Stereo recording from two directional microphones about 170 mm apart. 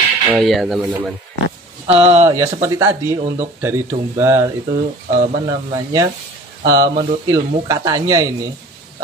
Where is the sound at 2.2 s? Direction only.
20° right (ahead or behind).